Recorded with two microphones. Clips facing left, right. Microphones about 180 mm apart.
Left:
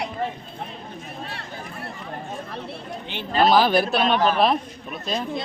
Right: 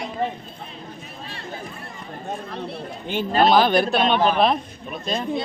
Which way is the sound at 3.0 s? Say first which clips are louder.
Right 6 dB; 45° right (ahead or behind).